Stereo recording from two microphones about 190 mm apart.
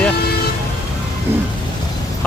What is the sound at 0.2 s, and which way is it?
Vehicle, 55° left (ahead or behind).